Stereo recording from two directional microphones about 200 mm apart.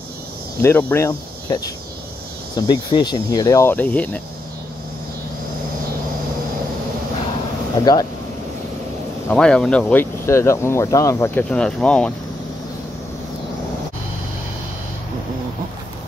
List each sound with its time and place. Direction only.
0.6 s speech: 10° left (ahead or behind)
7.8 s speech: 20° left (ahead or behind)
9.3 s speech: 5° left (ahead or behind)